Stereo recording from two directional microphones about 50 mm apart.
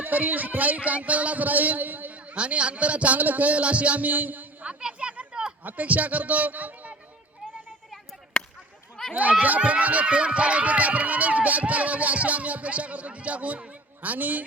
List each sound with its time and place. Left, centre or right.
0.0 s speech: right
2.3 s speech: right
4.6 s chatter: right
5.6 s speech: right
8.4 s a sound: centre
9.4 s speech: right